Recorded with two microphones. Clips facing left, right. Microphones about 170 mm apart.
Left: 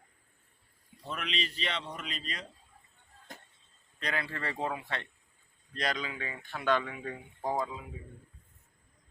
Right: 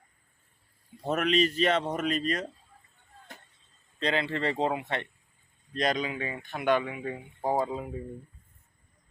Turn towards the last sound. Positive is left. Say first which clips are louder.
# right 9 dB
turn(degrees=-50)  # may be behind; listen again after turning